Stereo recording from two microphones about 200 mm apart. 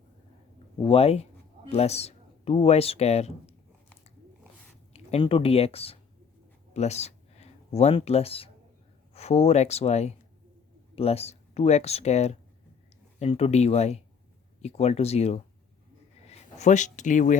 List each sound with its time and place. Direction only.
0.8 s speech: 25° left (ahead or behind)
4.9 s speech: 30° left (ahead or behind)